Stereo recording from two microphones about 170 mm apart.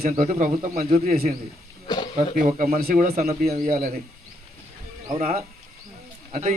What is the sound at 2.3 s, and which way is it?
Speech, 55° right (ahead or behind).